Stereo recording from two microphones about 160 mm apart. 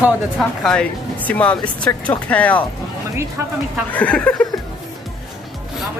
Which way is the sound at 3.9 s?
10° left (ahead or behind).